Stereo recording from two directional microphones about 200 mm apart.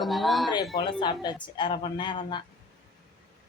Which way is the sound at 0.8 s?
20° left (ahead or behind).